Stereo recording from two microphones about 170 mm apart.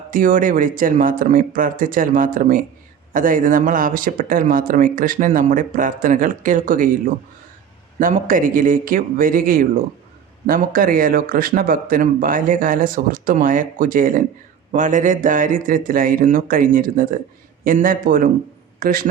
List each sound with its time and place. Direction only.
0.1 s speech: 55° right (ahead or behind)
8.3 s a man's voice: 55° right (ahead or behind)